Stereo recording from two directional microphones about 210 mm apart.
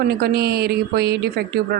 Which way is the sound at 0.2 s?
50° right (ahead or behind).